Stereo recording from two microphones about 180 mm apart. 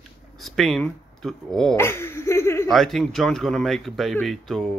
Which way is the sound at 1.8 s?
15° left (ahead or behind).